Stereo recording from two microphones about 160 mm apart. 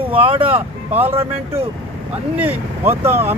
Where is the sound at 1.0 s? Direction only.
15° right (ahead or behind).